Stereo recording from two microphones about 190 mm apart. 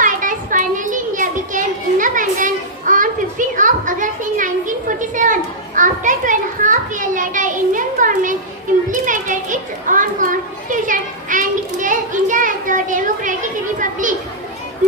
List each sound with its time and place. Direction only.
0.0 s children playing: 45° right (ahead or behind)
8.9 s a child's voice: 45° right (ahead or behind)
10.7 s children playing: 45° right (ahead or behind)